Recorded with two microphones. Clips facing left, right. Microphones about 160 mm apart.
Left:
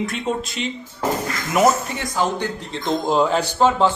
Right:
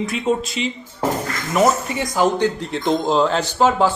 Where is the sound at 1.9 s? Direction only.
15° right (ahead or behind).